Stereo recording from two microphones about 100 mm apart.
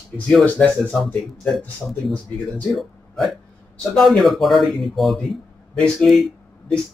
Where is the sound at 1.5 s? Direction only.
Centre (ahead or behind).